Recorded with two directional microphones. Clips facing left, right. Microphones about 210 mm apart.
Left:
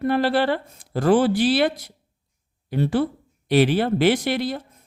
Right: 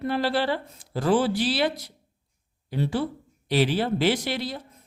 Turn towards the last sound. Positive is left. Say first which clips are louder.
# left 5 dB
turn(degrees=55)  # may be behind; listen again after turning